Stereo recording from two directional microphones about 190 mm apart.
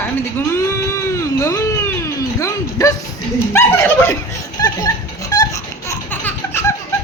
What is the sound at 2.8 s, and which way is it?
A woman's voice, 20° left (ahead or behind).